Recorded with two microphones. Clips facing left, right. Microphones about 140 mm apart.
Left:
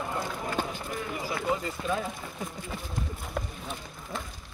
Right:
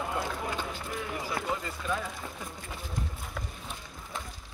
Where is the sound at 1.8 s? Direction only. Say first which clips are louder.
Left 3 dB; 25° left (ahead or behind).